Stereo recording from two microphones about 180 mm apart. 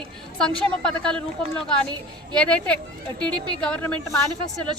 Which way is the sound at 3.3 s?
25° right (ahead or behind).